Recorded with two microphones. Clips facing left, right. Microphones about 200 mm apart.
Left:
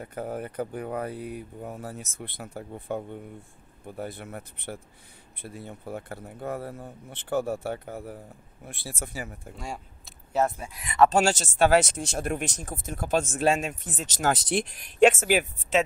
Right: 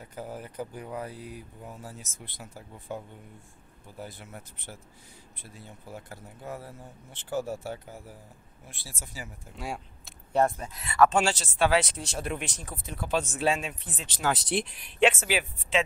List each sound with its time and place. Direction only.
0.0 s speech: 60° left (ahead or behind)
9.6 s speech: centre (ahead or behind)
11.0 s speech: 40° left (ahead or behind)